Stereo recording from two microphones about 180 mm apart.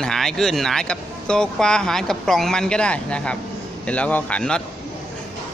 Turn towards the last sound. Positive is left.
turn(degrees=5)  # may be behind; listen again after turning